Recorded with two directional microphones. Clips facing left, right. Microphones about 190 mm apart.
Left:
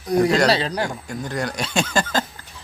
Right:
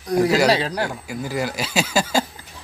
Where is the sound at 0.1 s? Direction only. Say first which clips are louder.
Even; 5° right (ahead or behind).